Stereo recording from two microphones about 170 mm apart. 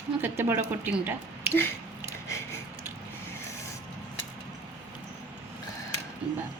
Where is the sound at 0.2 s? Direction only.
10° right (ahead or behind).